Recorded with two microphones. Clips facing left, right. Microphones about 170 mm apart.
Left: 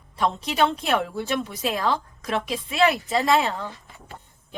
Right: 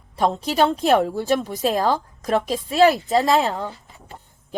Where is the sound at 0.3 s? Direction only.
40° right (ahead or behind).